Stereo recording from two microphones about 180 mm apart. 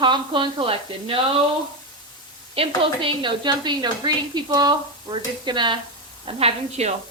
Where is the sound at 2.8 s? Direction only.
30° right (ahead or behind).